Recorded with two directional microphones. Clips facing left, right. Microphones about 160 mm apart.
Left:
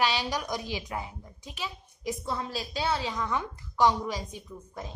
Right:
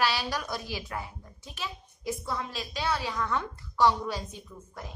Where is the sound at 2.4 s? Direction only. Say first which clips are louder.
Left 2 dB; 30° left (ahead or behind).